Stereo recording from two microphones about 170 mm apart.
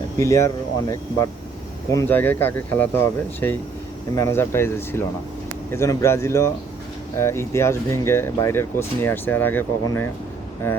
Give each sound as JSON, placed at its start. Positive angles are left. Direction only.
{"t": 0.2, "sound": "speech", "side_deg": 20}
{"t": 4.1, "sound": "speech", "side_deg": 15}